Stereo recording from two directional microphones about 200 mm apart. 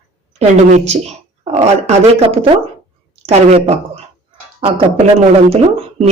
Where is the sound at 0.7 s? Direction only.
35° right (ahead or behind).